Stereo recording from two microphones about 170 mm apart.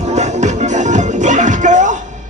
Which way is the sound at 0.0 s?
40° right (ahead or behind).